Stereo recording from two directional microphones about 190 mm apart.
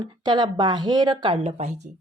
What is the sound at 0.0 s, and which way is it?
Speech, 20° right (ahead or behind).